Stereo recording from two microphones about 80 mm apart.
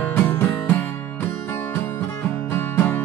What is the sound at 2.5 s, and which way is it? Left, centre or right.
Music, left.